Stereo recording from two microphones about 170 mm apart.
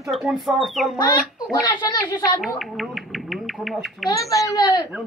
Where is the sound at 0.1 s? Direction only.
Centre (ahead or behind).